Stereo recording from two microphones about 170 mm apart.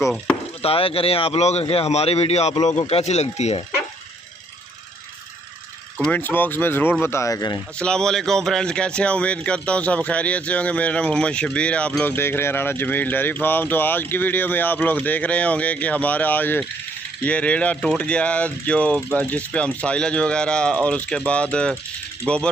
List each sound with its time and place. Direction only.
0.6 s speech: 35° left (ahead or behind)
5.9 s speech: 5° left (ahead or behind)
7.8 s speech: 5° left (ahead or behind)